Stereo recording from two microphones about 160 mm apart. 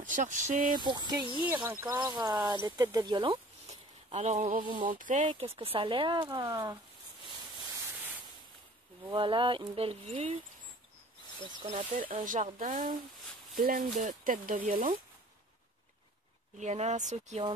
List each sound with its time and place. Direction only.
0.0 s speech: 55° right (ahead or behind)
0.7 s speech: 25° right (ahead or behind)
1.2 s speech: 30° left (ahead or behind)
1.7 s speech: 15° right (ahead or behind)
2.4 s speech: 25° right (ahead or behind)
4.1 s speech: 45° right (ahead or behind)
5.3 s speech: 35° right (ahead or behind)
9.1 s speech: 30° right (ahead or behind)
11.6 s speech: 50° right (ahead or behind)
16.5 s speech: 45° right (ahead or behind)